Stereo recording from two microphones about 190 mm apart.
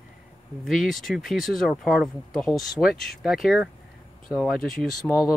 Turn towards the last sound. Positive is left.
turn(degrees=0)  # may be behind; listen again after turning